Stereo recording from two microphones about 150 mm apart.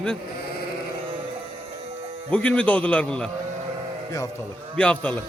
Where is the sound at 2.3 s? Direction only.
10° left (ahead or behind).